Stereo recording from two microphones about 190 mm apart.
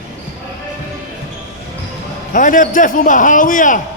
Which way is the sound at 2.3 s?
45° left (ahead or behind).